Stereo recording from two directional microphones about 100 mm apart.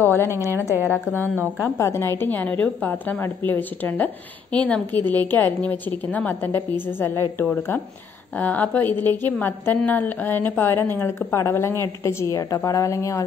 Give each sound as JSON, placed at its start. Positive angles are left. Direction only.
{"t": 0.0, "sound": "a woman's voice", "side_deg": 20}
{"t": 0.5, "sound": "a woman's voice", "side_deg": -20}
{"t": 1.8, "sound": "a woman's voice", "side_deg": 25}